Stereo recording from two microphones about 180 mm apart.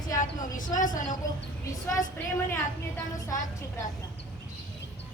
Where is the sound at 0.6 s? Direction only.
45° left (ahead or behind).